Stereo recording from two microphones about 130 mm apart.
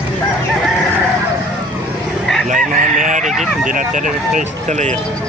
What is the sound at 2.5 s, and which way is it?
Chicken, 90° right.